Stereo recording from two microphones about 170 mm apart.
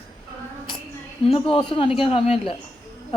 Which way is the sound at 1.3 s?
30° left (ahead or behind).